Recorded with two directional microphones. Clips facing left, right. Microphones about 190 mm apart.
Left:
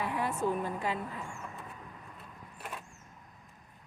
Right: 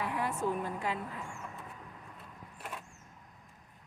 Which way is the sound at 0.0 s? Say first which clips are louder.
Left 1 dB; 25° left (ahead or behind).